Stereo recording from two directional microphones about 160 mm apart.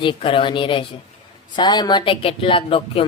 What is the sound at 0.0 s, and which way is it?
Speech, 35° left (ahead or behind).